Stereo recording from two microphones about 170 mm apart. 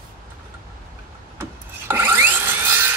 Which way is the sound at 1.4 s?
15° right (ahead or behind).